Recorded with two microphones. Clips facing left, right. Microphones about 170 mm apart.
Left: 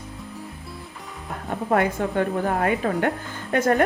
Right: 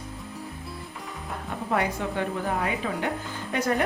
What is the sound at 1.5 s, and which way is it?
A woman's voice, 50° left (ahead or behind).